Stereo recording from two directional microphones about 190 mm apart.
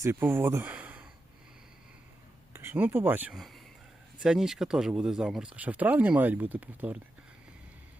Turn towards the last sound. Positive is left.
turn(degrees=-10)  # may be behind; listen again after turning